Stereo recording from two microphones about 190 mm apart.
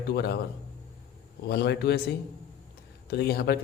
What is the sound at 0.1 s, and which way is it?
Speech, 60° left (ahead or behind).